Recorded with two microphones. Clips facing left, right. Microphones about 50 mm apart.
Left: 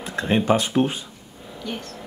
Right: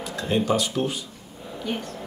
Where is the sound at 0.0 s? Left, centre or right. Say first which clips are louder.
Left 3 dB; left.